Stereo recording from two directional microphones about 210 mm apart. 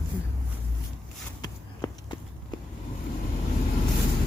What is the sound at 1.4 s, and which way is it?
Clip-clop, 20° left (ahead or behind).